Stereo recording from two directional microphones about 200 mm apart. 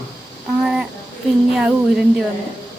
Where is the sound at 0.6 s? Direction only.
5° right (ahead or behind).